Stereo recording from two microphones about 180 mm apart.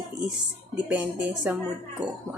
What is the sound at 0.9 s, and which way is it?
Speech, 5° right (ahead or behind).